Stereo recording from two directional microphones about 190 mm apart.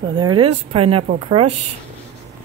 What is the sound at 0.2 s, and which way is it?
A woman's voice, 25° right (ahead or behind).